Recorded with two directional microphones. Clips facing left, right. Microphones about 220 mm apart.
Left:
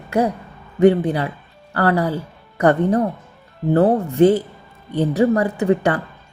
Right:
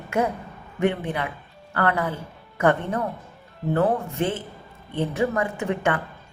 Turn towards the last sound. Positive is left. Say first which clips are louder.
# left 7 dB
turn(degrees=35)  # may be behind; listen again after turning